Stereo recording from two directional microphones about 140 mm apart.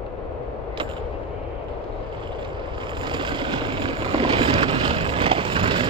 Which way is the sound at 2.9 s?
35° right (ahead or behind).